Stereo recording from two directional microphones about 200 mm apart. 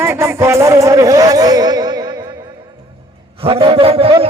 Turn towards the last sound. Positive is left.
turn(degrees=-25)  # may be behind; listen again after turning